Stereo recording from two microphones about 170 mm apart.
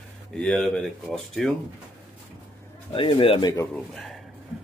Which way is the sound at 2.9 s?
30° left (ahead or behind).